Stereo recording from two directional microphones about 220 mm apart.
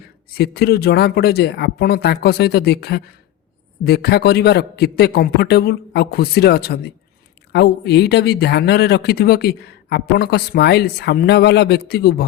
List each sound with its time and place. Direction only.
0.3 s speech: 45° left (ahead or behind)